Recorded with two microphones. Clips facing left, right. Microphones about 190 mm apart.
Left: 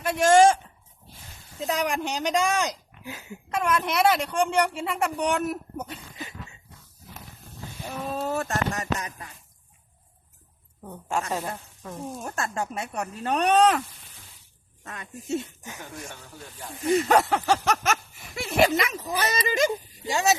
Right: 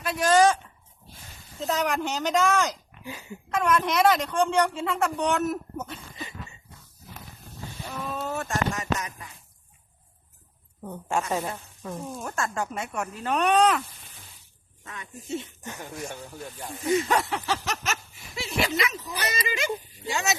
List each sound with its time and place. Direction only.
0.3 s speech: 25° left (ahead or behind)
1.6 s a woman's voice: 10° left (ahead or behind)
8.1 s speech: 35° left (ahead or behind)
11.1 s a woman's voice: 5° right (ahead or behind)
12.2 s speech: 35° left (ahead or behind)
16.9 s speech: 45° left (ahead or behind)